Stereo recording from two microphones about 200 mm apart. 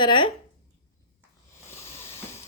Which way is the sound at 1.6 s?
15° left (ahead or behind).